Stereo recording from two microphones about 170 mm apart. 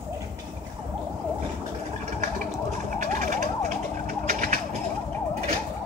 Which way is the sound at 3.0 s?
50° right (ahead or behind).